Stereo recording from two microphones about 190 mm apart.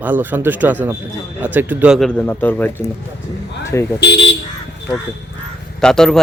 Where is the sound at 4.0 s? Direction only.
65° left (ahead or behind).